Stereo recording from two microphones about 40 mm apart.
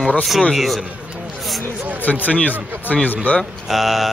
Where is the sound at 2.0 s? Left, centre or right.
Left.